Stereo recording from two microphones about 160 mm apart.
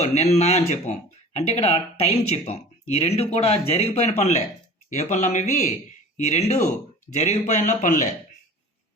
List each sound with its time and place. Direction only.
0.0 s speech: 40° left (ahead or behind)